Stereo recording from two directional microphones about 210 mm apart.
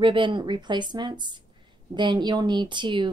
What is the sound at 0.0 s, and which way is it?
A woman's voice, 25° right (ahead or behind).